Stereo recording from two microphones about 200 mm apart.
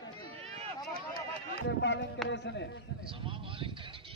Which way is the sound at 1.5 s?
60° left (ahead or behind).